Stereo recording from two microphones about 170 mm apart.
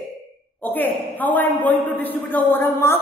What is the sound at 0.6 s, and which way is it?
A woman's voice, 10° left (ahead or behind).